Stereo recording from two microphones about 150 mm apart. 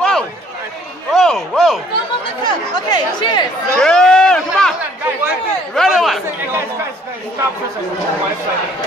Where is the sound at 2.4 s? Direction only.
30° left (ahead or behind).